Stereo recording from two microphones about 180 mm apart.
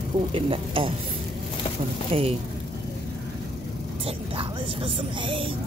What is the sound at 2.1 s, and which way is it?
Speech, 30° right (ahead or behind).